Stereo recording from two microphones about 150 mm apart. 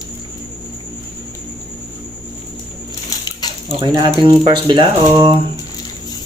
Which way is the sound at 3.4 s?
25° left (ahead or behind).